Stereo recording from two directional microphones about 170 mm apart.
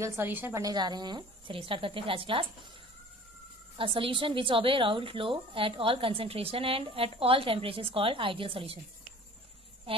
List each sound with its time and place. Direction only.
0.0 s a woman's voice: 10° right (ahead or behind); by 2.4 s 30° right (ahead or behind)
3.7 s a woman's voice: 30° right (ahead or behind)